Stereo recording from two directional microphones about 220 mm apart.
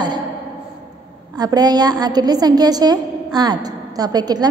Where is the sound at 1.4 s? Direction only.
20° right (ahead or behind).